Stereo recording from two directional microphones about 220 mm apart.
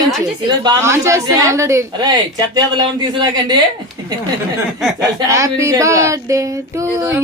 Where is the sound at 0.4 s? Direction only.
20° right (ahead or behind).